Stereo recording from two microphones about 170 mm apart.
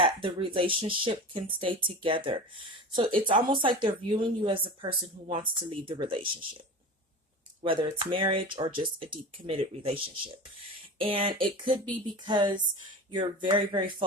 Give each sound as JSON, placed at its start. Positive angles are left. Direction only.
{"t": 0.0, "sound": "speech", "side_deg": -30}
{"t": 7.6, "sound": "speech", "side_deg": -30}